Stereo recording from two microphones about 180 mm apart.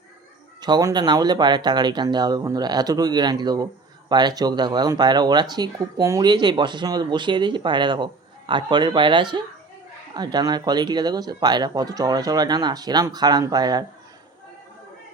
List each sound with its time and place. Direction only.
0.6 s speech: 20° right (ahead or behind)